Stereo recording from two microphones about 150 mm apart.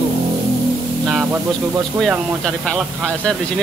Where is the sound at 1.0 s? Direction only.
5° right (ahead or behind).